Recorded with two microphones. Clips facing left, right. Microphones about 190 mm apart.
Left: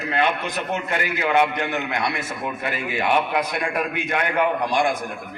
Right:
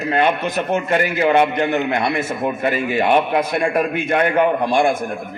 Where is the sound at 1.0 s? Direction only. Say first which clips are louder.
Right 2 dB; 25° right (ahead or behind).